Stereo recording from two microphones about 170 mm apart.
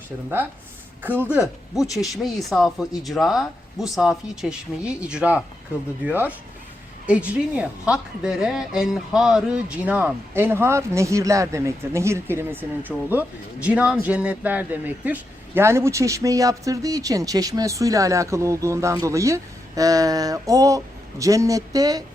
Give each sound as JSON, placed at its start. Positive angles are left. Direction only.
{"t": 1.0, "sound": "speech", "side_deg": -10}